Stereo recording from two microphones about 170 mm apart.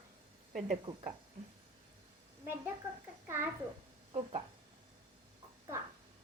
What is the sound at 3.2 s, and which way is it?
Speech, 15° right (ahead or behind).